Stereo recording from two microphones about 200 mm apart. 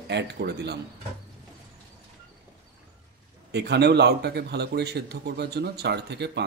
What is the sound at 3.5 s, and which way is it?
Speech, 55° right (ahead or behind).